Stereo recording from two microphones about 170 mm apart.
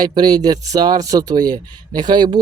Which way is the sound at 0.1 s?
25° right (ahead or behind).